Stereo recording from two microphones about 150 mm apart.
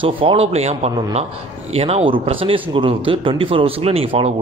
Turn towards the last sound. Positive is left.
turn(degrees=-40)  # may be behind; listen again after turning